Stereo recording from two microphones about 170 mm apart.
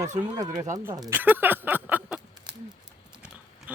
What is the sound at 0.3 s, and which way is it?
Speech, 20° right (ahead or behind).